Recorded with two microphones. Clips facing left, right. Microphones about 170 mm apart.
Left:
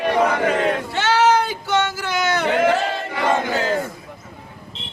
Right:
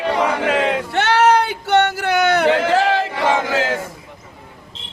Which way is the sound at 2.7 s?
90° right.